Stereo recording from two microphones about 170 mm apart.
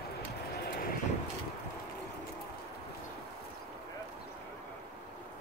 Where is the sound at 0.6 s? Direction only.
60° left (ahead or behind).